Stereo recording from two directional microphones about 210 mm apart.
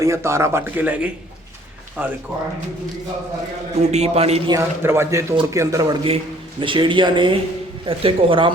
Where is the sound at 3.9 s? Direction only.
30° right (ahead or behind).